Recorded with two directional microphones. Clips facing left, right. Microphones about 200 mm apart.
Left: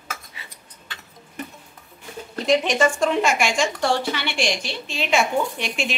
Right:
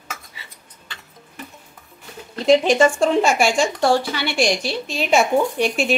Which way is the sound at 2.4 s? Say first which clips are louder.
Right 5 dB; 30° right (ahead or behind).